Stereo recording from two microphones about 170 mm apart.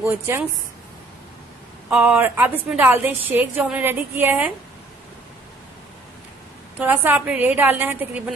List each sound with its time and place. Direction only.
0.0 s a woman's voice: 15° right (ahead or behind)
1.9 s a woman's voice: 10° right (ahead or behind)
6.8 s a woman's voice: 10° right (ahead or behind)